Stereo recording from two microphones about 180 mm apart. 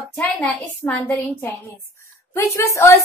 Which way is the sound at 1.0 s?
10° left (ahead or behind).